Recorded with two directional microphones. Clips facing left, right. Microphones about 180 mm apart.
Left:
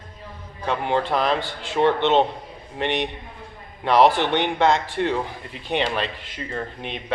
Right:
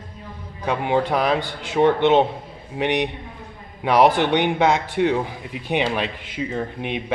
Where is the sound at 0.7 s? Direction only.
15° right (ahead or behind).